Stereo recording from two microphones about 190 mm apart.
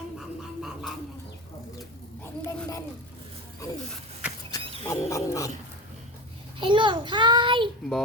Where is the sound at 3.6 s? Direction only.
15° left (ahead or behind).